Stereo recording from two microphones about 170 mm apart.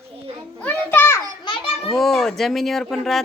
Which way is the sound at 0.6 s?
10° left (ahead or behind).